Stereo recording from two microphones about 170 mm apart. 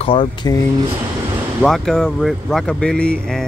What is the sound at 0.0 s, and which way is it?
Speech, 30° left (ahead or behind).